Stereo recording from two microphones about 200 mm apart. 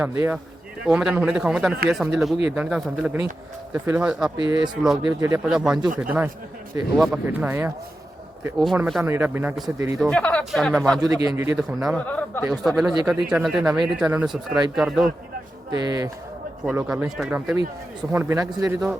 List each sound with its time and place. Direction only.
0.0 s speech: 10° right (ahead or behind)
5.5 s speech: centre (ahead or behind)
9.7 s speech: 15° right (ahead or behind)
10.0 s speech: 5° left (ahead or behind)
11.0 s speech: 20° right (ahead or behind)
11.5 s a man's voice: centre (ahead or behind)
15.7 s speech: 20° right (ahead or behind)
16.6 s speech: 5° right (ahead or behind)